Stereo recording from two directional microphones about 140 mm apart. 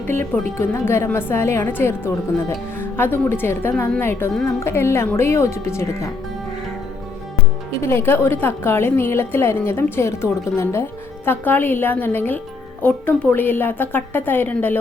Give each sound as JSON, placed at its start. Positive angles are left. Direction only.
{"t": 0.1, "sound": "a woman's voice", "side_deg": 15}
{"t": 7.8, "sound": "a woman's voice", "side_deg": 15}